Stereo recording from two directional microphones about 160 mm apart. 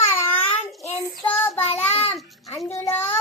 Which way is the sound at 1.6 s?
40° left (ahead or behind).